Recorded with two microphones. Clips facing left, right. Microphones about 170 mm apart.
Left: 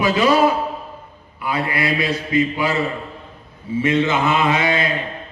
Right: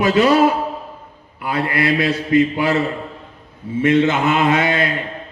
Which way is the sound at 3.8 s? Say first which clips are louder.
Right 3 dB; 55° right (ahead or behind).